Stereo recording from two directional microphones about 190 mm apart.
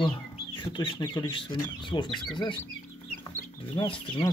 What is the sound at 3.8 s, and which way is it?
Speech, 25° left (ahead or behind).